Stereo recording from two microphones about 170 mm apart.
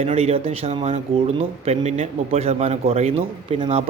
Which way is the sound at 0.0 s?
35° right (ahead or behind).